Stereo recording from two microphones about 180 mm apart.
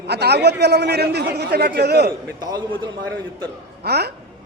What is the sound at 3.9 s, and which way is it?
Speech, 65° right (ahead or behind).